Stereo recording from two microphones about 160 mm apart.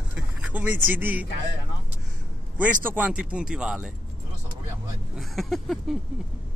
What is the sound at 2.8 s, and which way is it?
Speech, 10° right (ahead or behind).